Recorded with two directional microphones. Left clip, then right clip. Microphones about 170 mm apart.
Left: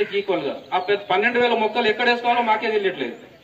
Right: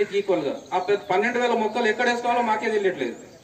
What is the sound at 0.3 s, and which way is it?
A man's voice, 20° right (ahead or behind).